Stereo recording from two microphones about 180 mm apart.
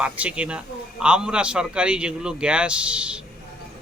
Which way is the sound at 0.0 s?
5° right (ahead or behind).